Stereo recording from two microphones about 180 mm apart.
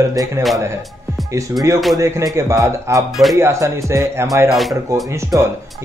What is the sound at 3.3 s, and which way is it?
Speech, 15° right (ahead or behind).